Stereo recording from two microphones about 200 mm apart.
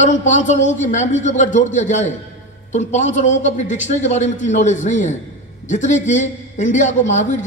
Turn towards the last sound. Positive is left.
turn(degrees=35)  # may be behind; listen again after turning